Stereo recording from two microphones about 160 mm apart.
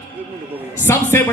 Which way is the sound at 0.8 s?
15° left (ahead or behind).